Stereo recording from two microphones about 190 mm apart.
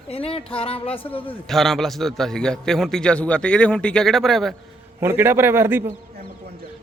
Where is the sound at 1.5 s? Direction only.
Centre (ahead or behind).